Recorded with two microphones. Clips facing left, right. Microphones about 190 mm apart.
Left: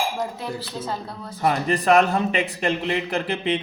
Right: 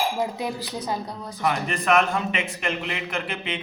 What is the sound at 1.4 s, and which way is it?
Speech, 35° left (ahead or behind).